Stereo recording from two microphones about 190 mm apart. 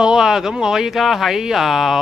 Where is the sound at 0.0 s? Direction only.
5° right (ahead or behind).